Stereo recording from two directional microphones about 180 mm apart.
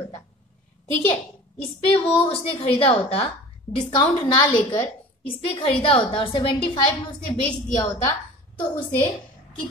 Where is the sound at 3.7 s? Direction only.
20° left (ahead or behind).